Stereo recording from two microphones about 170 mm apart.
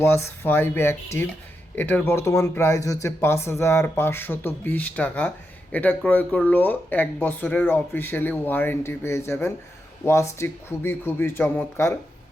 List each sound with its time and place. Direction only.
0.0 s speech: 15° left (ahead or behind)